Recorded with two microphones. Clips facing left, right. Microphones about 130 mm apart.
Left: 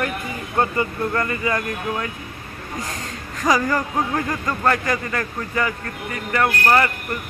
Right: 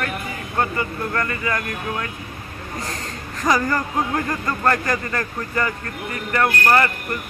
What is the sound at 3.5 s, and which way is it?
Speech, 10° left (ahead or behind).